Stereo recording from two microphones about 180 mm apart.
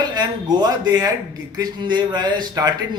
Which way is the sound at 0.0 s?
25° right (ahead or behind).